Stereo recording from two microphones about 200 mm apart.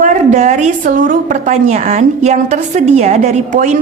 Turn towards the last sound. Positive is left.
turn(degrees=-35)  # may be behind; listen again after turning